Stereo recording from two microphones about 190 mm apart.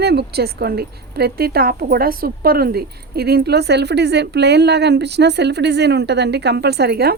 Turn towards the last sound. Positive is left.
turn(degrees=-60)  # may be behind; listen again after turning